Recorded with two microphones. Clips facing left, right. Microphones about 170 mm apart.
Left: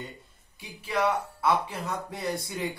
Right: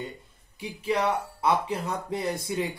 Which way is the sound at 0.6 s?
25° right (ahead or behind).